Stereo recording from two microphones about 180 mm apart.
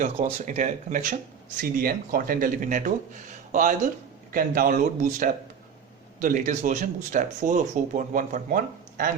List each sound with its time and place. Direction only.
0.2 s speech: 40° right (ahead or behind)